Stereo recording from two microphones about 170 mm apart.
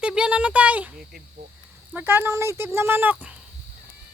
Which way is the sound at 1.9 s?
10° right (ahead or behind).